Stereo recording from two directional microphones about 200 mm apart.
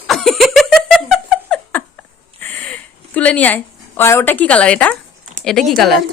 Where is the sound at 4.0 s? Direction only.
10° left (ahead or behind).